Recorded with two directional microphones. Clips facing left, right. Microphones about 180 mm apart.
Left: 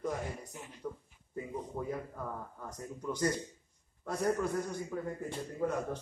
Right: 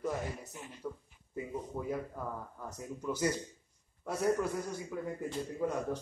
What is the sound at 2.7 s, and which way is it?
Speech, 10° right (ahead or behind).